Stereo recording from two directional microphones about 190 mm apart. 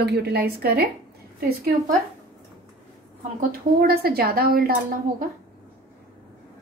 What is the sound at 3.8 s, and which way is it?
Speech, 50° right (ahead or behind).